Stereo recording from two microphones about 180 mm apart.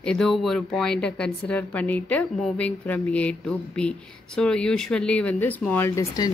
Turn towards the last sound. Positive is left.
turn(degrees=15)  # may be behind; listen again after turning